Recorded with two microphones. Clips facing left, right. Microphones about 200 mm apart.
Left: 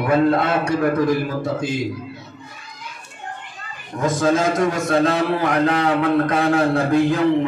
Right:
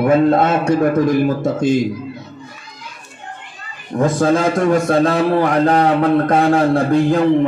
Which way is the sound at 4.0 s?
55° right (ahead or behind).